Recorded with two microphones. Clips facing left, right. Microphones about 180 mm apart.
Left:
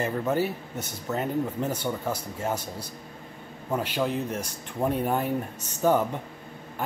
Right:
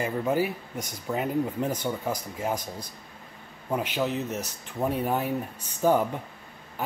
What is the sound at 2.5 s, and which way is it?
Speech, 5° left (ahead or behind).